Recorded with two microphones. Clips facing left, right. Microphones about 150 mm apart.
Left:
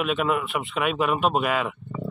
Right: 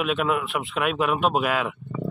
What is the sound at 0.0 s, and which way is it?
Speech, centre (ahead or behind).